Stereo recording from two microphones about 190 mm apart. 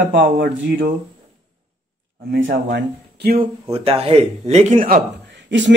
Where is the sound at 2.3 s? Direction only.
60° right (ahead or behind).